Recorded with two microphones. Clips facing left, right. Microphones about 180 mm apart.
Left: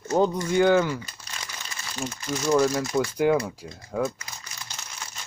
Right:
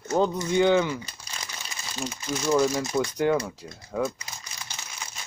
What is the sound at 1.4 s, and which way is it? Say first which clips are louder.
Crumpling: even; 15° right (ahead or behind).